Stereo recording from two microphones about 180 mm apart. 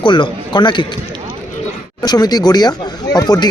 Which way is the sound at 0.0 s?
25° left (ahead or behind).